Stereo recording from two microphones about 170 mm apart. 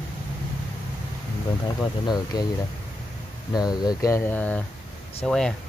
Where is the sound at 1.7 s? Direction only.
25° left (ahead or behind).